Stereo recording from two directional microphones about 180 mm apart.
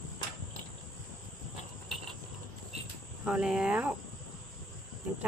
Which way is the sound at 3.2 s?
5° right (ahead or behind).